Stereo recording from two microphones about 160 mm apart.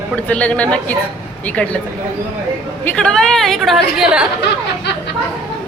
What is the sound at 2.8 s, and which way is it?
A woman's voice, 5° left (ahead or behind).